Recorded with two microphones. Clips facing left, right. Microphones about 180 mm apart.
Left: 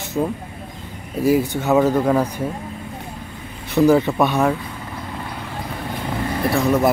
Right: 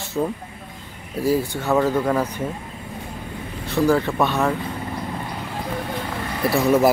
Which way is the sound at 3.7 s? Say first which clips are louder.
Left 4 dB; 20° left (ahead or behind).